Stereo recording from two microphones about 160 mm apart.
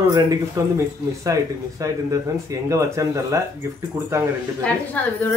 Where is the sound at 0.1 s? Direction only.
20° right (ahead or behind).